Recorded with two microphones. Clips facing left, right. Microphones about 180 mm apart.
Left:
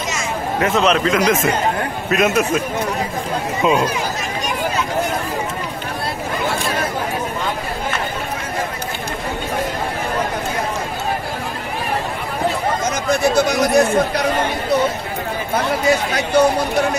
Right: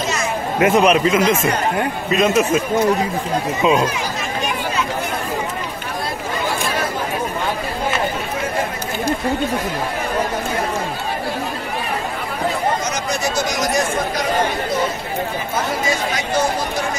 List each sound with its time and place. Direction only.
0.6 s a man's voice: 15° right (ahead or behind); by 2.6 s centre (ahead or behind)
3.6 s a man's voice: centre (ahead or behind)
13.1 s speech: 55° left (ahead or behind)
15.9 s speech: 60° left (ahead or behind)